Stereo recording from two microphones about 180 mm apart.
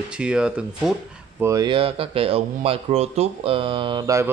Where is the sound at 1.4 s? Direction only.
20° right (ahead or behind).